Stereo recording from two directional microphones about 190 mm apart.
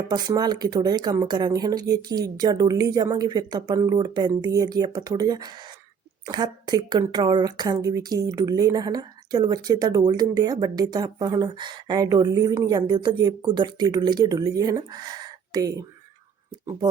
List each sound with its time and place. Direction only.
0.1 s a woman's voice: 20° right (ahead or behind)